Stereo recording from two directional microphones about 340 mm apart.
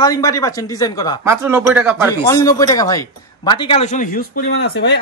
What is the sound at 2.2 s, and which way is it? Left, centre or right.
A man's voice, centre.